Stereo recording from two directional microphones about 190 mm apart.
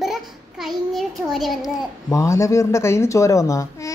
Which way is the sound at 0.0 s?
Centre (ahead or behind).